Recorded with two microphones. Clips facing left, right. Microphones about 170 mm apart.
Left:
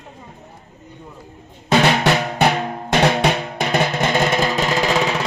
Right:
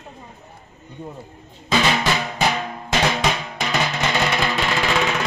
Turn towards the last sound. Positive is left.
turn(degrees=35)  # may be behind; listen again after turning